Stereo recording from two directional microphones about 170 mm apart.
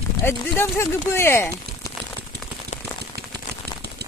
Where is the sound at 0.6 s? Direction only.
15° left (ahead or behind).